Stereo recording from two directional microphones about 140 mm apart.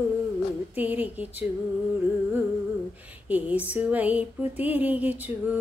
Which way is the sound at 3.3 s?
10° right (ahead or behind).